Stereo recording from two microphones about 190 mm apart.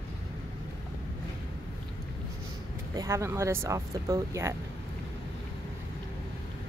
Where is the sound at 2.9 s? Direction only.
15° right (ahead or behind).